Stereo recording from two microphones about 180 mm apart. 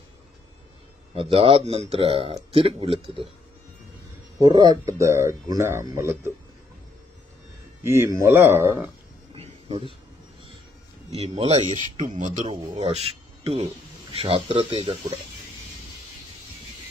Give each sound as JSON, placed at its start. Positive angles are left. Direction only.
{"t": 1.1, "sound": "speech", "side_deg": -30}
{"t": 4.4, "sound": "speech", "side_deg": -25}
{"t": 7.8, "sound": "speech", "side_deg": -15}
{"t": 9.3, "sound": "a sound", "side_deg": -30}
{"t": 11.1, "sound": "a man's voice", "side_deg": -35}